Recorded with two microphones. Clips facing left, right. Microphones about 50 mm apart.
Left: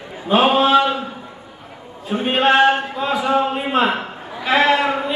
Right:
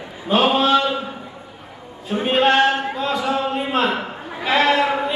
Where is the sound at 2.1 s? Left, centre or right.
Centre.